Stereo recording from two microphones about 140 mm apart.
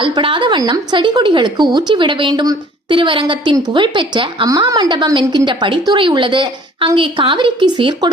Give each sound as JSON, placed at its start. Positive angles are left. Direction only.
{"t": 0.0, "sound": "a woman's voice", "side_deg": -35}